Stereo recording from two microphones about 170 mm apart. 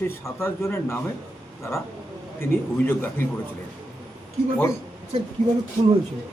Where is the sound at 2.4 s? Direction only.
15° left (ahead or behind).